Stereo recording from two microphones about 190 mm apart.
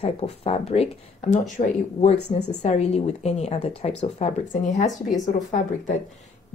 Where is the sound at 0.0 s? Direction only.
30° left (ahead or behind).